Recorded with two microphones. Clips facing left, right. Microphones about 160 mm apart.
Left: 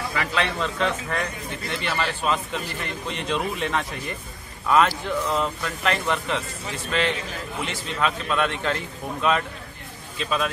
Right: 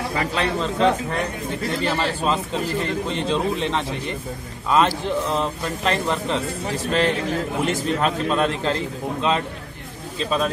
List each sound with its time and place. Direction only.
0.1 s a man's voice: 35° right (ahead or behind)
8.3 s a man's voice: 35° right (ahead or behind)